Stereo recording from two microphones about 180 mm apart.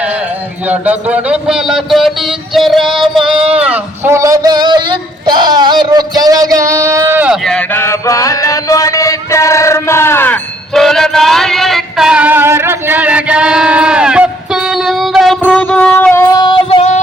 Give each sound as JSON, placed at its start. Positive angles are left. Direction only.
{"t": 0.7, "sound": "speech", "side_deg": -5}
{"t": 3.6, "sound": "a sound", "side_deg": -10}
{"t": 7.4, "sound": "chant", "side_deg": 5}
{"t": 15.6, "sound": "music", "side_deg": 5}
{"t": 16.3, "sound": "child singing", "side_deg": 25}